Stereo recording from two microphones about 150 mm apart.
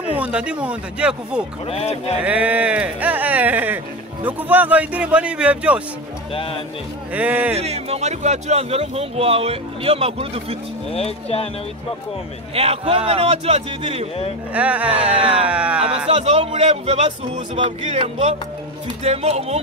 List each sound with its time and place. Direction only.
0.1 s speech: 10° right (ahead or behind)
1.7 s speech: 40° left (ahead or behind)
2.2 s speech: 10° right (ahead or behind)
6.3 s speech: 35° left (ahead or behind)
7.2 s speech: 10° right (ahead or behind)
7.5 s a man's voice: 45° right (ahead or behind)
10.9 s speech: 40° left (ahead or behind)
12.5 s a man's voice: 40° right (ahead or behind)
14.5 s speech: 10° right (ahead or behind)
15.1 s a sound: 40° right (ahead or behind)
15.4 s speech: 5° right (ahead or behind)
16.1 s a man's voice: 45° right (ahead or behind)